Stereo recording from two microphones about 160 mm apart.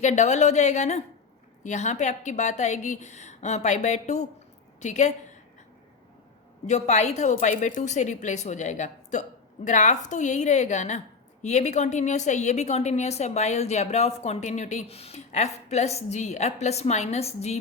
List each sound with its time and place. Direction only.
0.0 s a woman's voice: 45° left (ahead or behind)
6.7 s a woman's voice: 45° left (ahead or behind)